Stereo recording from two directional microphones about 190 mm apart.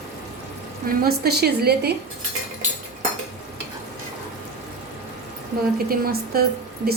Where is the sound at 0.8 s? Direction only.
55° right (ahead or behind).